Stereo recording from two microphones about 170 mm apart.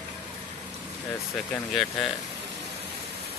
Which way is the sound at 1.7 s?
Centre (ahead or behind).